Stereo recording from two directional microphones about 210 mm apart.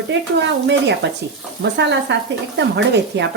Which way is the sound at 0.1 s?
55° right (ahead or behind).